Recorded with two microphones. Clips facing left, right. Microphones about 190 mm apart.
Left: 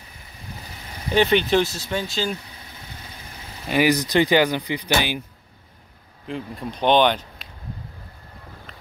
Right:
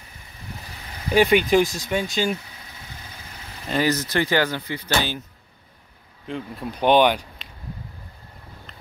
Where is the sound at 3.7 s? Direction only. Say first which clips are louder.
Left 3 dB; 15° left (ahead or behind).